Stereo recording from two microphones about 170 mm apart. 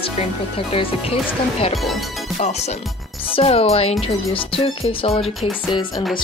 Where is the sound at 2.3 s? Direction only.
40° left (ahead or behind).